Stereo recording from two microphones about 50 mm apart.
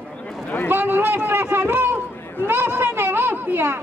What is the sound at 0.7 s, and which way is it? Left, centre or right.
A man's voice, right.